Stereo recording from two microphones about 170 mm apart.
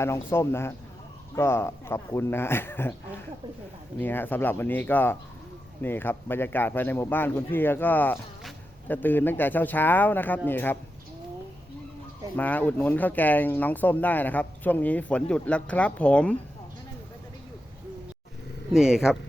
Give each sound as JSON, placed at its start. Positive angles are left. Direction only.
{"t": 0.0, "sound": "speech", "side_deg": 15}
{"t": 12.4, "sound": "speech", "side_deg": 10}
{"t": 18.7, "sound": "speech", "side_deg": -5}